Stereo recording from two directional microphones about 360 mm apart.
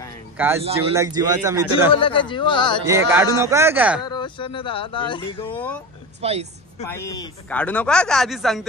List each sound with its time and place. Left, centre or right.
0.7 s a man's voice: centre
2.0 s speech: centre
2.9 s a man's voice: centre
4.0 s speech: centre
6.2 s a man's voice: centre
6.8 s speech: centre